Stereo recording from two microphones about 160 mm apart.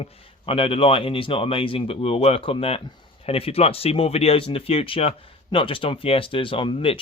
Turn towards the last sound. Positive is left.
turn(degrees=35)  # may be behind; listen again after turning